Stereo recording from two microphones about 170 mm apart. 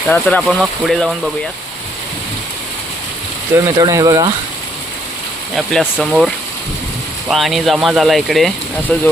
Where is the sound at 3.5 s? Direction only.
20° right (ahead or behind).